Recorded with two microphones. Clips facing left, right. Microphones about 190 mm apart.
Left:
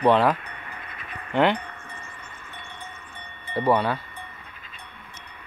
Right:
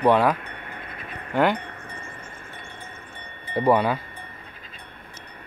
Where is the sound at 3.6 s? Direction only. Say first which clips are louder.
Right 2 dB; 10° right (ahead or behind).